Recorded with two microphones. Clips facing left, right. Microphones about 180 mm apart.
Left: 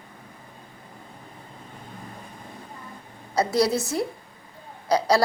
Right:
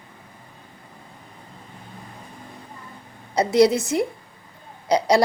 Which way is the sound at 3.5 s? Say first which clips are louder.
Right 7 dB; 20° right (ahead or behind).